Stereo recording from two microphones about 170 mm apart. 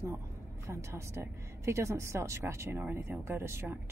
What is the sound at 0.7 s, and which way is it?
A woman's voice, 15° right (ahead or behind).